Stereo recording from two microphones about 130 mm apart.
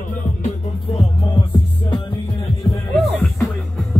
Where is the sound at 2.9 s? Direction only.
Centre (ahead or behind).